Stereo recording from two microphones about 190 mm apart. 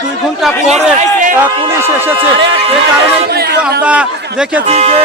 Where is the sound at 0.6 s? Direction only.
35° right (ahead or behind).